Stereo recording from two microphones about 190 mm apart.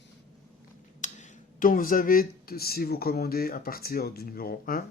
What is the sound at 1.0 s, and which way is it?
Speech, 40° left (ahead or behind).